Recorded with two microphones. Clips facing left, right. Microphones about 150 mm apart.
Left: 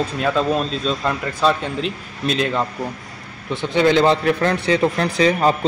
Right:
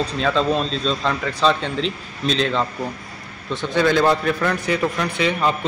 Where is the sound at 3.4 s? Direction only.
20° left (ahead or behind).